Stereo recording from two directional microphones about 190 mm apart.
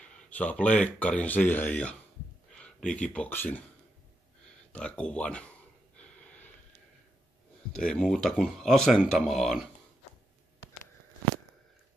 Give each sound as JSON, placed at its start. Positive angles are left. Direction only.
{"t": 0.0, "sound": "speech", "side_deg": 5}
{"t": 4.7, "sound": "speech", "side_deg": 5}
{"t": 5.9, "sound": "gasp", "side_deg": 10}
{"t": 7.7, "sound": "speech", "side_deg": 5}